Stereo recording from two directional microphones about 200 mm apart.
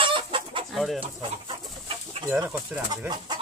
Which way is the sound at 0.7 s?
Centre (ahead or behind).